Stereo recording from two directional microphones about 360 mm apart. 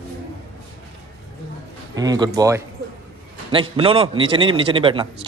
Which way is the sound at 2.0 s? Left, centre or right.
Centre.